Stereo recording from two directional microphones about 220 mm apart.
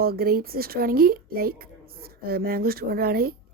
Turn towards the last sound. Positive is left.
turn(degrees=-45)  # may be behind; listen again after turning